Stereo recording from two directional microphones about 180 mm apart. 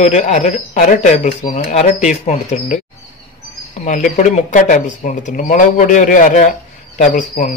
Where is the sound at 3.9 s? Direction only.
45° left (ahead or behind).